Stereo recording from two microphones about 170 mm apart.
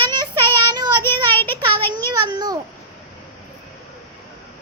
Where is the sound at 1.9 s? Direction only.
25° right (ahead or behind).